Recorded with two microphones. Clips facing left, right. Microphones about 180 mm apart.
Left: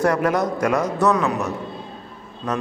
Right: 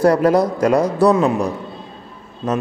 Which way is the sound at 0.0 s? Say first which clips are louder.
Right 6 dB; 35° right (ahead or behind).